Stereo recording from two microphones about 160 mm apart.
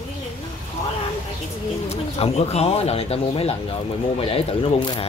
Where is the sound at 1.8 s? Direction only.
40° left (ahead or behind).